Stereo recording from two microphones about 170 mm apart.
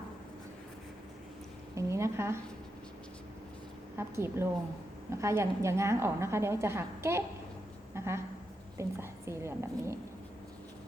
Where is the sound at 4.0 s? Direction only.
15° right (ahead or behind).